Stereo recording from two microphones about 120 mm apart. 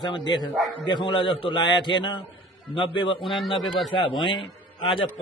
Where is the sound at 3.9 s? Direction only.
40° left (ahead or behind).